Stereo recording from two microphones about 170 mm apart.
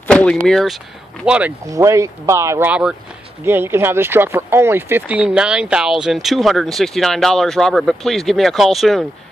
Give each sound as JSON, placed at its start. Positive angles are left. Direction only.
{"t": 0.1, "sound": "a sound", "side_deg": 5}
{"t": 0.5, "sound": "speech", "side_deg": 0}
{"t": 1.7, "sound": "speech", "side_deg": -20}